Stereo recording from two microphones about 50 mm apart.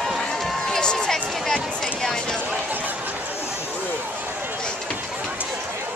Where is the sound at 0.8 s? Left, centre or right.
Centre.